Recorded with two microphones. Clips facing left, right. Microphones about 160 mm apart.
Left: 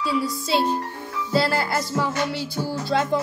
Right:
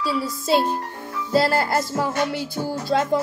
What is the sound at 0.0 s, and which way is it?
Music, 45° right (ahead or behind).